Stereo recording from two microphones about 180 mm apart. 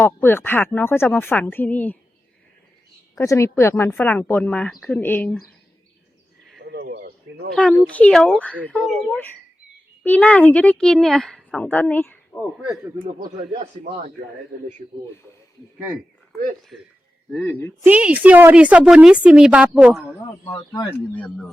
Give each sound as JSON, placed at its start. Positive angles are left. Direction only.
{"t": 0.0, "sound": "speech", "side_deg": 10}
{"t": 3.2, "sound": "speech", "side_deg": 15}
{"t": 6.6, "sound": "a sound", "side_deg": -70}
{"t": 6.8, "sound": "a sound", "side_deg": -55}
{"t": 7.5, "sound": "speech", "side_deg": 5}
{"t": 12.5, "sound": "a woman's voice", "side_deg": -5}
{"t": 15.8, "sound": "a woman's voice", "side_deg": -10}
{"t": 17.3, "sound": "speech", "side_deg": 10}
{"t": 17.8, "sound": "a woman's voice", "side_deg": -10}
{"t": 20.2, "sound": "speech", "side_deg": 25}
{"t": 21.1, "sound": "speech", "side_deg": 5}